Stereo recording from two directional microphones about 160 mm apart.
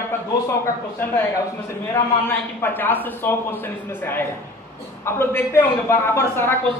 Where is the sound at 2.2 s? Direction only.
15° left (ahead or behind).